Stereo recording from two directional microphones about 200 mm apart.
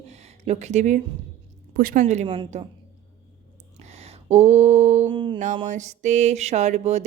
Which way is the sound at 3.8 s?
30° right (ahead or behind).